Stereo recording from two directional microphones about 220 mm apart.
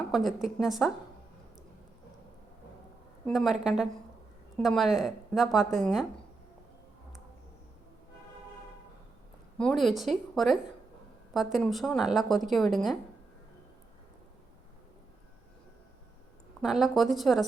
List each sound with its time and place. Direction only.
0.1 s a woman's voice: centre (ahead or behind)
3.2 s speech: centre (ahead or behind)
9.6 s speech: centre (ahead or behind)
16.6 s speech: centre (ahead or behind)